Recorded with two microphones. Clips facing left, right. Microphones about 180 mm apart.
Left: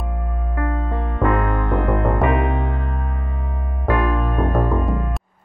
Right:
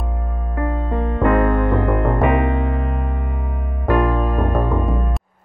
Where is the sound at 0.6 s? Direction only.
5° right (ahead or behind).